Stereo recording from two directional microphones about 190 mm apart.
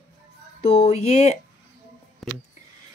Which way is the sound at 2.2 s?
Centre (ahead or behind).